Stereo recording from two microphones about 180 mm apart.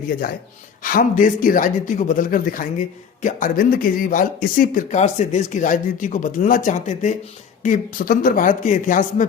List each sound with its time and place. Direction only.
0.9 s speech: 50° left (ahead or behind)